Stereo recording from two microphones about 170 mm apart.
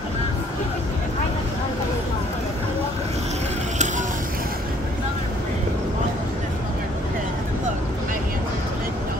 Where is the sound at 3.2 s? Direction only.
40° right (ahead or behind).